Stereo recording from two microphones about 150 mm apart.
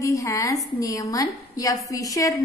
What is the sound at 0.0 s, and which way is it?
A woman's voice, 20° left (ahead or behind).